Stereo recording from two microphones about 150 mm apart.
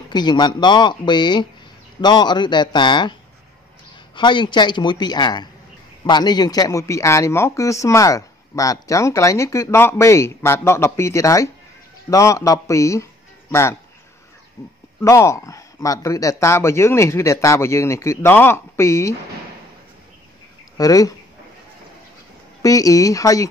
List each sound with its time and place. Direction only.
0.1 s a man's voice: 30° left (ahead or behind)
20.7 s speech: 25° left (ahead or behind)
22.6 s speech: 20° left (ahead or behind)